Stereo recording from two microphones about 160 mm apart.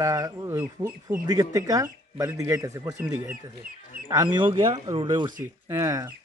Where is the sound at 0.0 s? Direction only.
20° right (ahead or behind).